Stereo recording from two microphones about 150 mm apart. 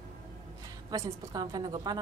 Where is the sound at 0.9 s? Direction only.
25° right (ahead or behind).